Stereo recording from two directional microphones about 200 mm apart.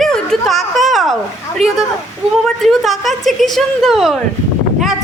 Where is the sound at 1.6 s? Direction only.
30° right (ahead or behind).